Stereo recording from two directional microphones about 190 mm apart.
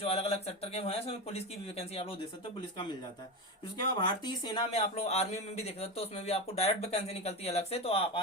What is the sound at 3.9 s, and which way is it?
Speech, 20° left (ahead or behind).